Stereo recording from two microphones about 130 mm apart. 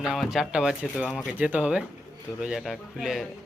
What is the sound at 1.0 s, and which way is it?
Speech, 5° left (ahead or behind).